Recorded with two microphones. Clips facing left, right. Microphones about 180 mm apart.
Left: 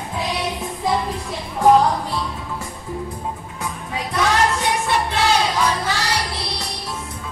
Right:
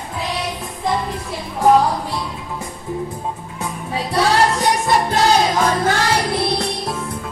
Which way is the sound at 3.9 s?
30° right (ahead or behind).